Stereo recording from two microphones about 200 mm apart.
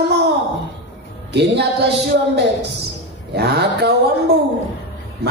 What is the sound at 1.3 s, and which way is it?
Speech, 60° right (ahead or behind).